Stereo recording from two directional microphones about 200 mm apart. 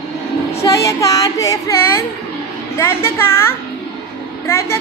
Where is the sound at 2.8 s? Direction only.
10° left (ahead or behind).